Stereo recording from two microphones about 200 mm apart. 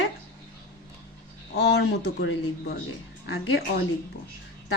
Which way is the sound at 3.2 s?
80° left.